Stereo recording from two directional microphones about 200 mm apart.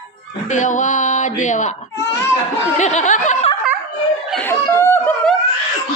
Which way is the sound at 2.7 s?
35° left (ahead or behind).